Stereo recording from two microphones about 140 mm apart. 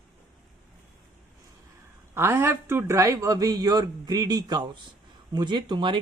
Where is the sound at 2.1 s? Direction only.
15° right (ahead or behind).